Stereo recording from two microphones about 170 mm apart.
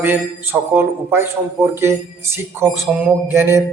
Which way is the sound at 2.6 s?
15° right (ahead or behind).